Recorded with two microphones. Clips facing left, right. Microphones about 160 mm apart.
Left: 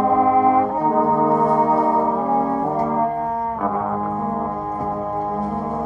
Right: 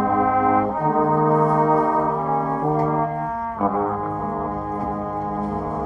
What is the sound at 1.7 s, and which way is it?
Music, 30° left (ahead or behind).